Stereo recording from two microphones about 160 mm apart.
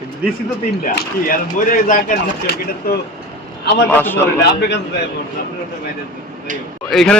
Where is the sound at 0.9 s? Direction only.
60° left (ahead or behind).